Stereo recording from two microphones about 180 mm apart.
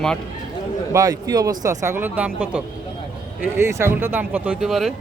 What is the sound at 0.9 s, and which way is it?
Speech, 20° right (ahead or behind).